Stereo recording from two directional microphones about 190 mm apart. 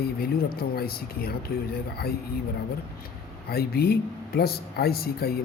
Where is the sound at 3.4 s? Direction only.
55° left (ahead or behind).